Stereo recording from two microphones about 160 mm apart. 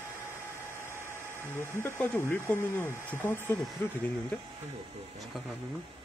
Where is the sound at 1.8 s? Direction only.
15° left (ahead or behind).